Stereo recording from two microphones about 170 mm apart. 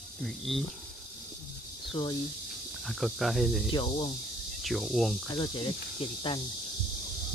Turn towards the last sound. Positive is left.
turn(degrees=30)  # may be behind; listen again after turning